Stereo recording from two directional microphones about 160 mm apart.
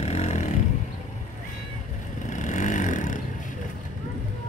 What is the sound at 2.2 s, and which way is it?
Vehicle, 50° left (ahead or behind).